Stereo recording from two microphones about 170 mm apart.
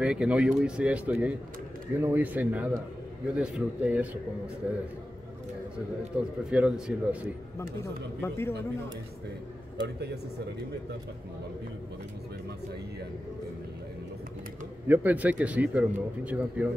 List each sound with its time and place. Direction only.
0.0 s a man's voice: 5° right (ahead or behind)
6.5 s speech: 5° right (ahead or behind)
7.8 s speech: 15° left (ahead or behind)
9.8 s a man's voice: 75° right (ahead or behind)
14.9 s speech: 10° right (ahead or behind)